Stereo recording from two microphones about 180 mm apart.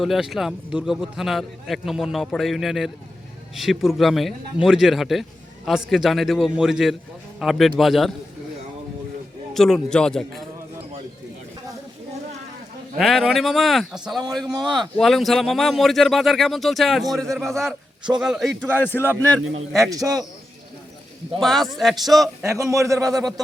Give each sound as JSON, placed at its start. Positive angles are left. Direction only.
{"t": 0.0, "sound": "a man's voice", "side_deg": 0}
{"t": 9.5, "sound": "a man's voice", "side_deg": 0}
{"t": 13.0, "sound": "a man's voice", "side_deg": 0}
{"t": 19.9, "sound": "a man's voice", "side_deg": -20}
{"t": 21.4, "sound": "a man's voice", "side_deg": 0}
{"t": 22.4, "sound": "a man's voice", "side_deg": -15}